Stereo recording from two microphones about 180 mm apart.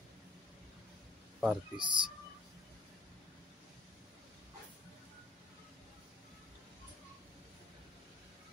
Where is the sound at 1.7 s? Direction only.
25° right (ahead or behind).